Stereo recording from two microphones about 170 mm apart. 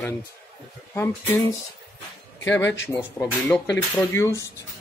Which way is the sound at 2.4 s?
15° left (ahead or behind).